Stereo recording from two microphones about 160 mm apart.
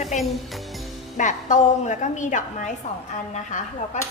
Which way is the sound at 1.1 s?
50° left (ahead or behind).